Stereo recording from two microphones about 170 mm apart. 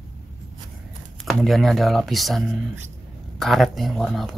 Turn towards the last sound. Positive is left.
turn(degrees=0)  # may be behind; listen again after turning